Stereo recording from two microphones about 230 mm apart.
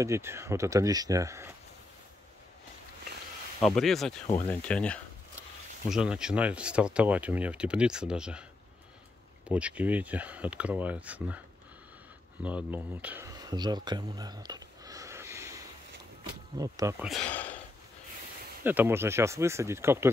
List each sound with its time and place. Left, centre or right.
0.0 s speech: centre
3.6 s speech: centre
9.5 s speech: centre
12.4 s speech: centre
18.6 s speech: centre